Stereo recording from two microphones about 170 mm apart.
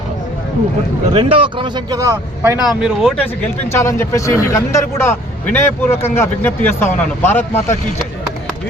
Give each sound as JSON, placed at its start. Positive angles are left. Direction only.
{"t": 1.1, "sound": "speech", "side_deg": -30}
{"t": 2.6, "sound": "speech", "side_deg": 0}
{"t": 3.7, "sound": "speech", "side_deg": 15}